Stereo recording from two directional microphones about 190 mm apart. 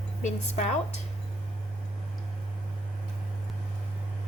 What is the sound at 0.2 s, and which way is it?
Speech, 40° left (ahead or behind).